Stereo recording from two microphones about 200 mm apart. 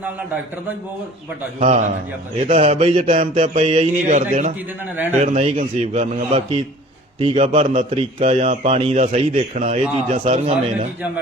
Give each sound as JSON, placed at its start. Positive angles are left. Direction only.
{"t": 1.5, "sound": "a man's voice", "side_deg": -40}
{"t": 4.1, "sound": "a man's voice", "side_deg": -40}